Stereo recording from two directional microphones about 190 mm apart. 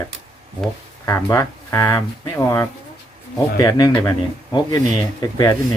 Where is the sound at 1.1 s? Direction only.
15° left (ahead or behind).